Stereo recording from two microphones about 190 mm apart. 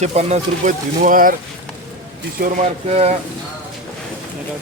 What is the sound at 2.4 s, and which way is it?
Speech, 35° right (ahead or behind).